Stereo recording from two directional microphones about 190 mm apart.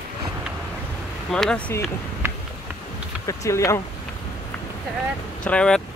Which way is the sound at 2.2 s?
15° right (ahead or behind).